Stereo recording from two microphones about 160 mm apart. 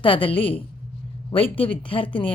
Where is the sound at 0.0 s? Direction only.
30° left (ahead or behind).